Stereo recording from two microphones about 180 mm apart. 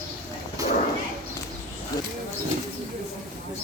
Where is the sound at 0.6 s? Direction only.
20° right (ahead or behind).